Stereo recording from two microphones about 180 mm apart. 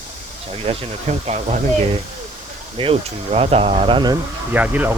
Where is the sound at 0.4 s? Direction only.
30° right (ahead or behind).